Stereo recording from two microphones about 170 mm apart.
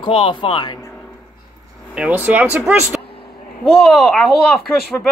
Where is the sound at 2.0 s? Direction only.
10° right (ahead or behind).